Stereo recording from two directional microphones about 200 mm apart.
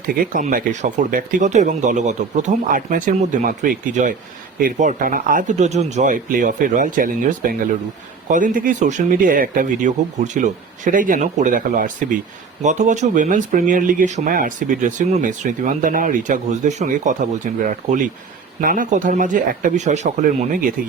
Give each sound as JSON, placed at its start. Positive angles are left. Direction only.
{"t": 0.3, "sound": "speech", "side_deg": -40}